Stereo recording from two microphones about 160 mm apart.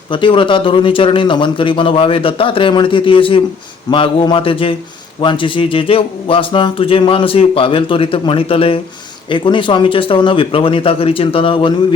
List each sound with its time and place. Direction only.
0.1 s speech: 30° left (ahead or behind)